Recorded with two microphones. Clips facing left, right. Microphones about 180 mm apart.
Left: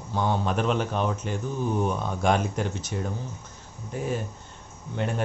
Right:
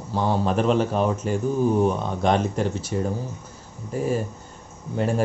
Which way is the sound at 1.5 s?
35° right (ahead or behind).